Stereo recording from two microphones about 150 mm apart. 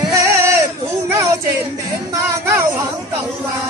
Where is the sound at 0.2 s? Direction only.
20° right (ahead or behind).